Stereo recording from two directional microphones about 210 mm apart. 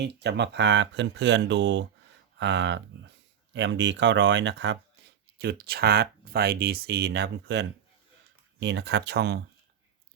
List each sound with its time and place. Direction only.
0.0 s speech: 55° right (ahead or behind)